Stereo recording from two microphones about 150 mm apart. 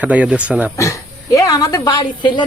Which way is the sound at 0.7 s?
20° left (ahead or behind).